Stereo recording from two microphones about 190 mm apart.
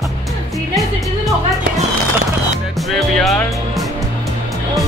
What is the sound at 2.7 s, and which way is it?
Music, centre (ahead or behind).